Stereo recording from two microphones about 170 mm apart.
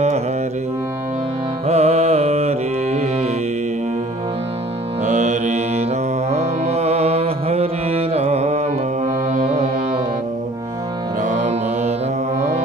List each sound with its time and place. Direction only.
1.7 s music: 40° right (ahead or behind)
5.0 s mantra: 45° right (ahead or behind)
11.2 s music: 40° right (ahead or behind)